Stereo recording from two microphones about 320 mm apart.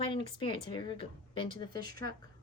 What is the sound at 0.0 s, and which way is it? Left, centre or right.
A woman's voice, centre.